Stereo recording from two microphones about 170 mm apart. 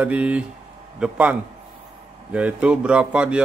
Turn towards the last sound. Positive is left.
turn(degrees=-5)  # may be behind; listen again after turning